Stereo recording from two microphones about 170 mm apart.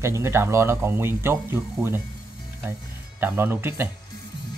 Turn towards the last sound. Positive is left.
turn(degrees=-15)  # may be behind; listen again after turning